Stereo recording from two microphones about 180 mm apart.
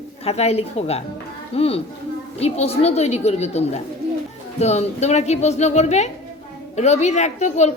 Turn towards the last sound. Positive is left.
turn(degrees=40)  # may be behind; listen again after turning